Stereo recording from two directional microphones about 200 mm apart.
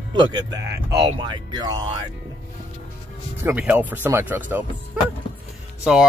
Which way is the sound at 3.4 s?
10° right (ahead or behind).